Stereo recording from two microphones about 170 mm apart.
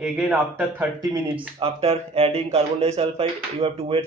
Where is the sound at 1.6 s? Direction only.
35° right (ahead or behind).